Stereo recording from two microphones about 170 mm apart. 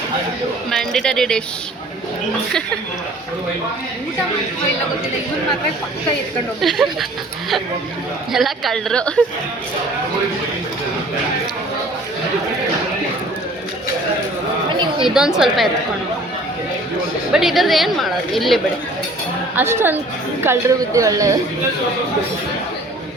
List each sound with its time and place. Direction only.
0.7 s a woman's voice: 5° left (ahead or behind)
6.6 s a woman's voice: centre (ahead or behind)
8.3 s a woman's voice: centre (ahead or behind)
15.0 s a woman's voice: 5° right (ahead or behind)
17.3 s a woman's voice: centre (ahead or behind)
19.5 s speech: 15° right (ahead or behind)